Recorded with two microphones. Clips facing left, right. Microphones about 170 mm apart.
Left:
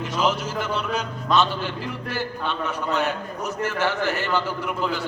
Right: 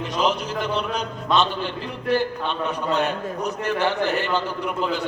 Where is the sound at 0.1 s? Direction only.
20° right (ahead or behind).